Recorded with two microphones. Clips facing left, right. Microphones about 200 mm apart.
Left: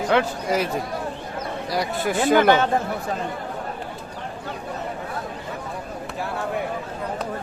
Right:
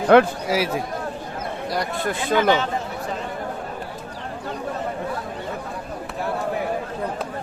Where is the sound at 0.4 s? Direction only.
5° right (ahead or behind).